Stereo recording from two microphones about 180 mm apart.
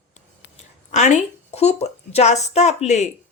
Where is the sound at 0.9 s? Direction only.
40° left (ahead or behind).